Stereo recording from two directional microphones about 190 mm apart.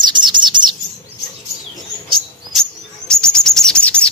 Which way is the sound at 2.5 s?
5° left (ahead or behind).